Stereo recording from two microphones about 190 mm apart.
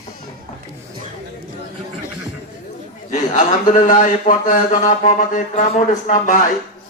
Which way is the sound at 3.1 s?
40° left (ahead or behind).